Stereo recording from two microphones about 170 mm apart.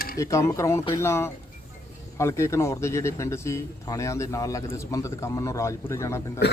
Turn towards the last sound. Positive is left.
turn(degrees=15)  # may be behind; listen again after turning